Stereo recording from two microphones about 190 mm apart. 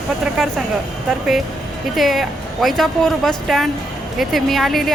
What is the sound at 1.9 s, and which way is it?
Speech, centre (ahead or behind).